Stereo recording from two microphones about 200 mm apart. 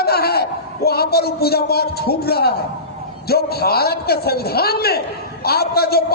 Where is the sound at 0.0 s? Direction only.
50° left (ahead or behind).